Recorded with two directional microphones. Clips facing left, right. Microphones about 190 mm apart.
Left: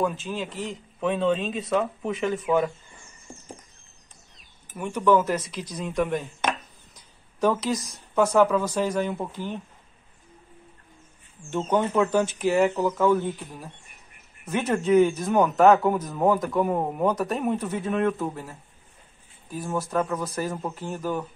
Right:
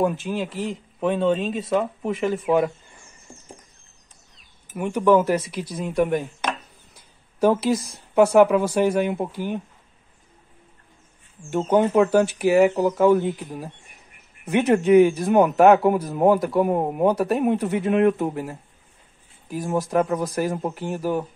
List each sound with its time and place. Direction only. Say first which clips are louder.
0.0 s speech: right 4 dB; 15° right (ahead or behind)
1.0 s speech: right 3 dB; centre (ahead or behind)
2.4 s speech: right 3 dB; 20° right (ahead or behind)
4.7 s speech: right 3 dB; 20° right (ahead or behind); by 6.0 s centre (ahead or behind)
7.3 s speech: right 5 dB; 10° right (ahead or behind)
11.5 s speech: right 5 dB; 15° right (ahead or behind)
14.5 s speech: right 5 dB; 15° right (ahead or behind)
19.7 s speech: right 5 dB; 15° right (ahead or behind)
20.1 s speech: right 5 dB; 35° right (ahead or behind)
20.3 s speech: right 5 dB; 15° right (ahead or behind)